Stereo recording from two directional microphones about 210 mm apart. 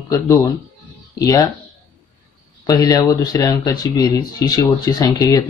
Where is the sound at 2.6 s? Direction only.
15° left (ahead or behind).